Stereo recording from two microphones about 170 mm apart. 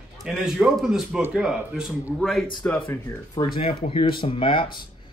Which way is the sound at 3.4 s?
25° left (ahead or behind).